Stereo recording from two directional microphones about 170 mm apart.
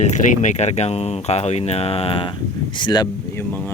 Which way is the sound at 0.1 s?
45° left (ahead or behind).